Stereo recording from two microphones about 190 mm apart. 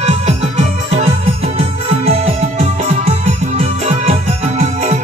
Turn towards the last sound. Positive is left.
turn(degrees=-35)  # may be behind; listen again after turning